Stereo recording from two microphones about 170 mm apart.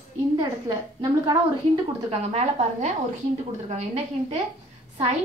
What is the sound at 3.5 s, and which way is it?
Speech, 40° right (ahead or behind).